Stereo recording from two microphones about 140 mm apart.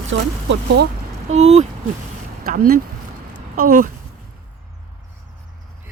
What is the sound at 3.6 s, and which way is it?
Speech, 80° right.